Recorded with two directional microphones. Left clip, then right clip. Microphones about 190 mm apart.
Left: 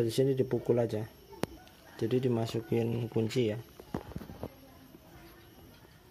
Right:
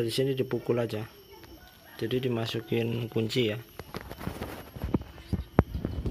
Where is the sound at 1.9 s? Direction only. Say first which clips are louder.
Right 1 dB; 20° left (ahead or behind).